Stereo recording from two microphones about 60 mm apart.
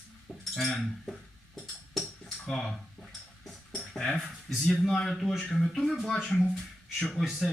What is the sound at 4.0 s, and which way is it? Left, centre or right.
Speech, centre.